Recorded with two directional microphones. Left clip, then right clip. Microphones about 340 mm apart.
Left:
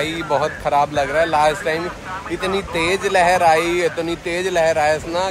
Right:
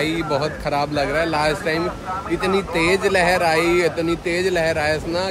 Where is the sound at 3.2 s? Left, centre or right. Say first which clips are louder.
Left 7 dB; centre.